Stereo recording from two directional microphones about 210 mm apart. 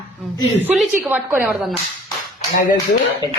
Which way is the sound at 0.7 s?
10° right (ahead or behind).